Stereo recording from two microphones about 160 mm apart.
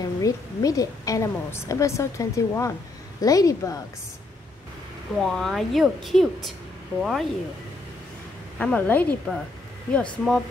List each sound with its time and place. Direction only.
0.0 s a woman's voice: 20° left (ahead or behind)
5.2 s a woman's voice: centre (ahead or behind)
8.5 s a woman's voice: 10° left (ahead or behind)